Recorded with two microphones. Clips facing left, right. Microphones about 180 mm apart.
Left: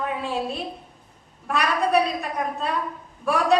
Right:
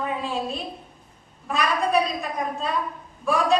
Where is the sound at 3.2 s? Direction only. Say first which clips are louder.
Left 1 dB; 65° left (ahead or behind).